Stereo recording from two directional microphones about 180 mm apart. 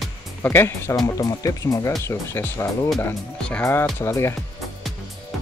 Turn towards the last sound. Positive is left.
turn(degrees=15)  # may be behind; listen again after turning